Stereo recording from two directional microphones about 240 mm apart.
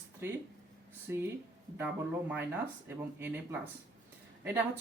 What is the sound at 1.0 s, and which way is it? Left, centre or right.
Speech, centre.